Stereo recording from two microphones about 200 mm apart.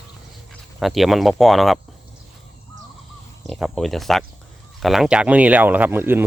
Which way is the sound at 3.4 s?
Centre (ahead or behind).